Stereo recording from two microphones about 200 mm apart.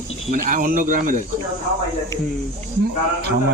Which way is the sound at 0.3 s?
40° right (ahead or behind).